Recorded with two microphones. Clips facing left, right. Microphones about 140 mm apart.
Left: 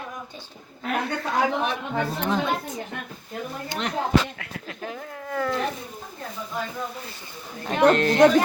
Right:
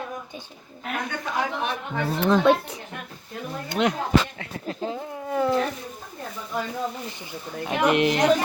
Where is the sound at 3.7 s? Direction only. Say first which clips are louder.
Right 9 dB; 65° right (ahead or behind).